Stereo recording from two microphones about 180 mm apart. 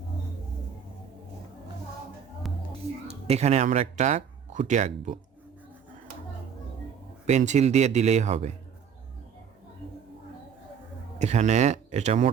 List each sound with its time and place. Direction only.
3.1 s speech: 35° right (ahead or behind)
7.3 s speech: 40° right (ahead or behind)
11.2 s speech: 40° right (ahead or behind)